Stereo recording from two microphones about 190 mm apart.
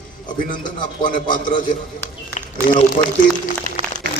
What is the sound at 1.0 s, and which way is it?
Speech, 45° left (ahead or behind).